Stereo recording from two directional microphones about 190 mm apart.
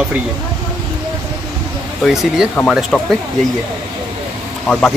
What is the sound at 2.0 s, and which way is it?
Speech, centre (ahead or behind).